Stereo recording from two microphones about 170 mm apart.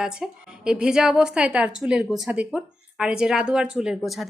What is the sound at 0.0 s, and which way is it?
Speech, 5° right (ahead or behind).